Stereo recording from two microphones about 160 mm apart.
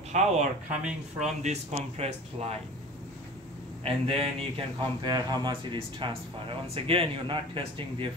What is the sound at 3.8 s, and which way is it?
Speech, 35° right (ahead or behind).